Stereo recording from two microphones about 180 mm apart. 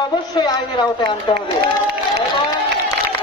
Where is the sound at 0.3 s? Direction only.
25° left (ahead or behind).